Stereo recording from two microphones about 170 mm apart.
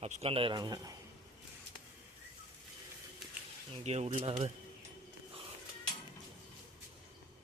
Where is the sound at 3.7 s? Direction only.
40° right (ahead or behind).